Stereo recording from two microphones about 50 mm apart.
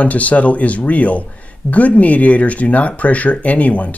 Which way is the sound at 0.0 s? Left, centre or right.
Left.